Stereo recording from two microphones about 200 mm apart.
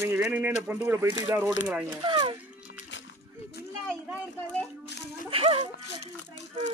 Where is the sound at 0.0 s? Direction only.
10° right (ahead or behind).